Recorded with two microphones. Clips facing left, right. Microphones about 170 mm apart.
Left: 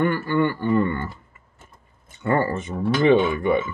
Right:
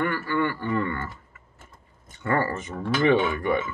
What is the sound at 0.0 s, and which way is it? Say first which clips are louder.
Speech: left 5 dB; 25° left (ahead or behind).